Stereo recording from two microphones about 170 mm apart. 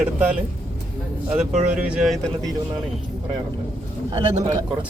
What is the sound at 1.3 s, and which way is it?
Speech, 5° right (ahead or behind).